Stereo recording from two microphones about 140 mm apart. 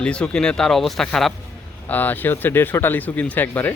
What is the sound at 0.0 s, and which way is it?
Speech, 5° left (ahead or behind).